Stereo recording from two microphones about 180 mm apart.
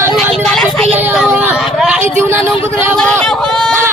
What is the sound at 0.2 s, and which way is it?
Vehicle, 5° left (ahead or behind).